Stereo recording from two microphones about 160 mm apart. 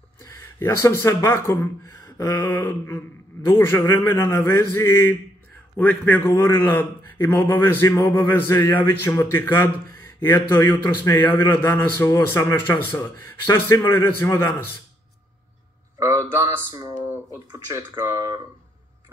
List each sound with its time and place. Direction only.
0.2 s a man's voice: 15° left (ahead or behind)
16.0 s a sound: 20° right (ahead or behind)
17.5 s speech: 20° right (ahead or behind)